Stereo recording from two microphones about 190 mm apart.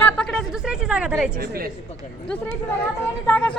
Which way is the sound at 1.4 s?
50° right (ahead or behind).